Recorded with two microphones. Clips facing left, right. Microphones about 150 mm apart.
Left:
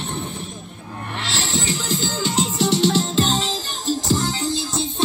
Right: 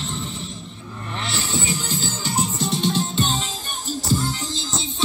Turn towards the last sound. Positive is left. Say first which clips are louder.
# left 3 dB
turn(degrees=80)